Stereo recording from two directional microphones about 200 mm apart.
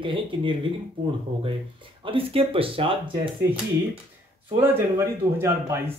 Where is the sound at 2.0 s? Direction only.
25° right (ahead or behind).